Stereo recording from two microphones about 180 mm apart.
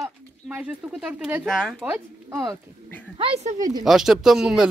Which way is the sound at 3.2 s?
35° right (ahead or behind).